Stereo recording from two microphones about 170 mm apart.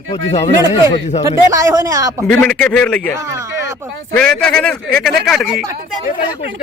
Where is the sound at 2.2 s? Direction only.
5° left (ahead or behind).